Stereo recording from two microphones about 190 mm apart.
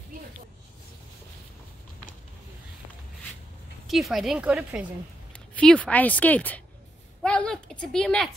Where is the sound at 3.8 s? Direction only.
Centre (ahead or behind).